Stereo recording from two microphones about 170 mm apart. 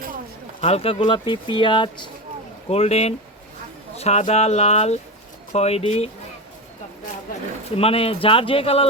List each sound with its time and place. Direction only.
0.6 s speech: 35° left (ahead or behind)
7.8 s speech: 35° left (ahead or behind)